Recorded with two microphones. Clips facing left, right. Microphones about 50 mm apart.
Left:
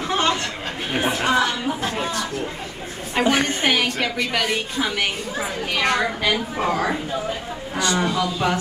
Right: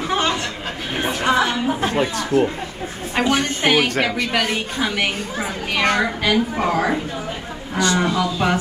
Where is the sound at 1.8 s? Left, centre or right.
Right.